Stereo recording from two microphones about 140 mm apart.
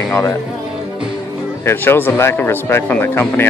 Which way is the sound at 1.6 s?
15° left (ahead or behind).